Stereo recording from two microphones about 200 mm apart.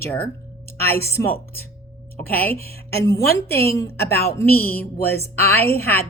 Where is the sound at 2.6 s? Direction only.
50° left (ahead or behind).